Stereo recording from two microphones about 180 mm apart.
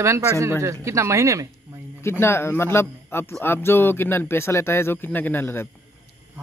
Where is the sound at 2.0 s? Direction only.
15° left (ahead or behind).